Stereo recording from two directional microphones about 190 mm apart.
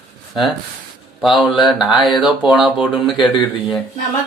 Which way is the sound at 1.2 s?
Centre (ahead or behind).